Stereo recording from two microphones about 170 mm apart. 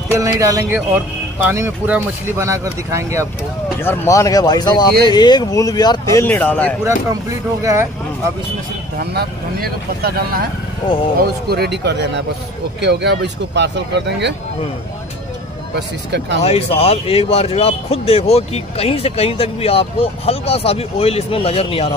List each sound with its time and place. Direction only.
0.1 s speech: 20° right (ahead or behind)
3.8 s speech: 15° left (ahead or behind)
7.6 s speech: 15° right (ahead or behind)
9.0 s speech: 70° right (ahead or behind); by 14.3 s 90° right
16.4 s speech: 35° left (ahead or behind)